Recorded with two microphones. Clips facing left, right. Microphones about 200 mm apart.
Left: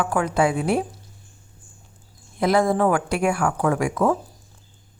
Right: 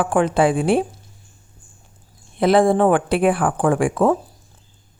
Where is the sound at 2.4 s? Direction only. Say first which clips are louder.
Right 4 dB; 30° right (ahead or behind).